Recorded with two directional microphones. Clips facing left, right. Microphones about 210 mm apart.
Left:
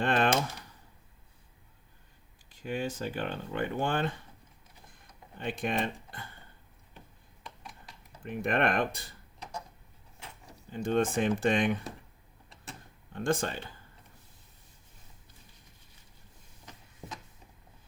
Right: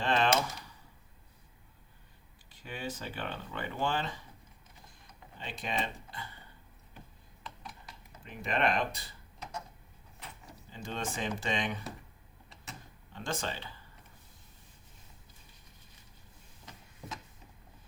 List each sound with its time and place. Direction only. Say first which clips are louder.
0.0 s speech: left 2 dB; 55° left (ahead or behind)
2.5 s speech: left 6 dB; 45° left (ahead or behind)
5.4 s speech: left 5 dB; 55° left (ahead or behind)
8.2 s speech: left 3 dB; 55° left (ahead or behind)
10.7 s speech: left 10 dB; 55° left (ahead or behind)
13.1 s speech: left 7 dB; 55° left (ahead or behind)